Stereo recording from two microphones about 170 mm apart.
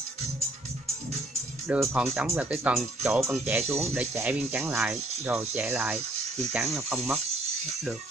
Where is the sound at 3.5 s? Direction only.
15° right (ahead or behind).